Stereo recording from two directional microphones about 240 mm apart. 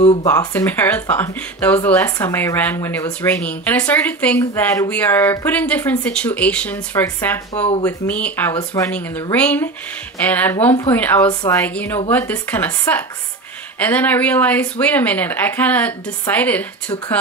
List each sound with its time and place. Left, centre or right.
0.0 s speech: left
0.3 s speech: centre
7.5 s speech: left
7.8 s speech: centre